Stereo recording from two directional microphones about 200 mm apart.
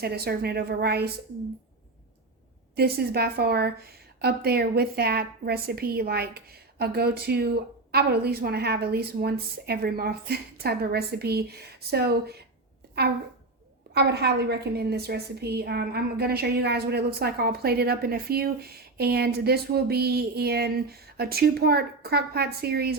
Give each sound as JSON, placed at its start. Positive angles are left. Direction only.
{"t": 0.0, "sound": "a woman's voice", "side_deg": -50}
{"t": 2.7, "sound": "a woman's voice", "side_deg": -50}
{"t": 13.9, "sound": "a woman's voice", "side_deg": -55}